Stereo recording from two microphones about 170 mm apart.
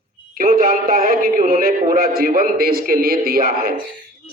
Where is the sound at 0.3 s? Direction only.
55° right (ahead or behind).